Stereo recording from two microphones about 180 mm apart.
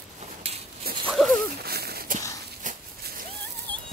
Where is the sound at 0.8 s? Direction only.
60° right (ahead or behind).